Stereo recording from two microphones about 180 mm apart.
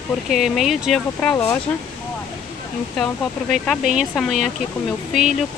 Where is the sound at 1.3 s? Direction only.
15° left (ahead or behind).